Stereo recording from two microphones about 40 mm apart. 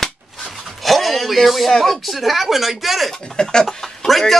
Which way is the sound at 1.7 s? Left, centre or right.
Centre.